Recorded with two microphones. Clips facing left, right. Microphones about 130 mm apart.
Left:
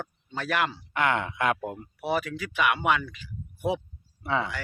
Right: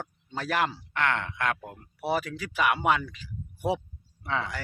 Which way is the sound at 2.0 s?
35° right (ahead or behind).